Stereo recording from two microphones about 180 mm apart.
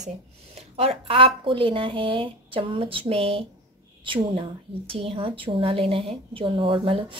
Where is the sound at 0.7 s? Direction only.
30° right (ahead or behind).